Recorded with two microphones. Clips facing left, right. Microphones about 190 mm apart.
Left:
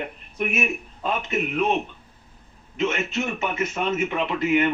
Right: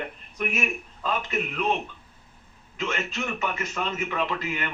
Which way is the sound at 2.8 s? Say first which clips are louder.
Left 5 dB; 25° left (ahead or behind).